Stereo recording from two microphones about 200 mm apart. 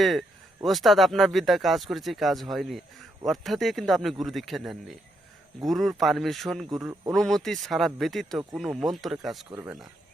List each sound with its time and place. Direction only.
0.0 s speech: centre (ahead or behind)
9.5 s speech: 15° right (ahead or behind)